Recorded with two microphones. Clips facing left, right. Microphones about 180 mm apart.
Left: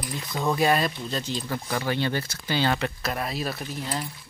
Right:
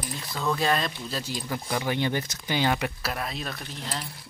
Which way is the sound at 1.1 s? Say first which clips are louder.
Left 2 dB; 10° right (ahead or behind).